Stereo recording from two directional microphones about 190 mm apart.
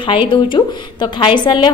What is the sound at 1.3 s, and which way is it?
Speech, 25° left (ahead or behind).